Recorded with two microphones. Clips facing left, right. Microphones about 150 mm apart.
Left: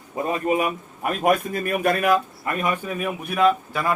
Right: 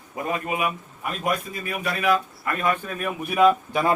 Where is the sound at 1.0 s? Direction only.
55° left (ahead or behind).